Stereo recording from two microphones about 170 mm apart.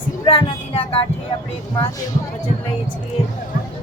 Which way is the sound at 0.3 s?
30° left (ahead or behind).